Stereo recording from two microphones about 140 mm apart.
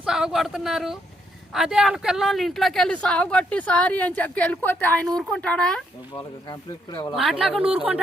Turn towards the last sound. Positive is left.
turn(degrees=-5)  # may be behind; listen again after turning